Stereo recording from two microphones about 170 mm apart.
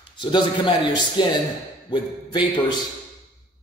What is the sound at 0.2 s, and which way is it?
A man's voice, 30° left (ahead or behind).